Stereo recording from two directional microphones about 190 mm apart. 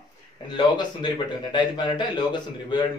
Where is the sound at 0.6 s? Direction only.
25° left (ahead or behind).